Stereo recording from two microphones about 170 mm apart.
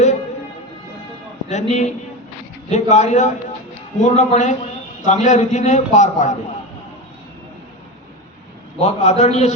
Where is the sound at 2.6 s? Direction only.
45° left (ahead or behind).